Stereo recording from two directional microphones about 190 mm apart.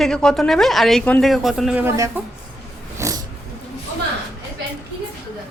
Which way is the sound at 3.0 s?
15° right (ahead or behind).